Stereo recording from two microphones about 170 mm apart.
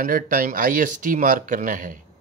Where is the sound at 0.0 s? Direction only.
55° right (ahead or behind).